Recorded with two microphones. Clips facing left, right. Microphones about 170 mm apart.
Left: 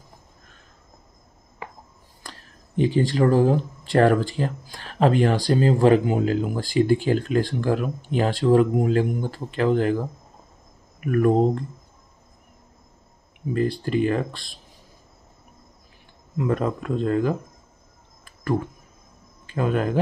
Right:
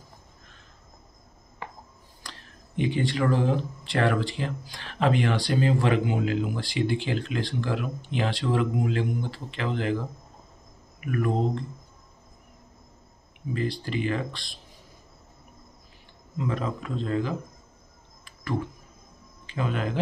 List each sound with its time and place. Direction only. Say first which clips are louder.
2.2 s speech: left 3 dB; 40° left (ahead or behind)
13.5 s speech: left 6 dB; 45° left (ahead or behind)
16.3 s speech: left 6 dB; 50° left (ahead or behind)
18.2 s a sound: left 5 dB; 50° left (ahead or behind)
19.4 s speech: left 6 dB; 45° left (ahead or behind)